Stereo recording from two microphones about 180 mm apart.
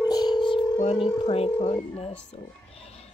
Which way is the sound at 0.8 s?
35° left (ahead or behind).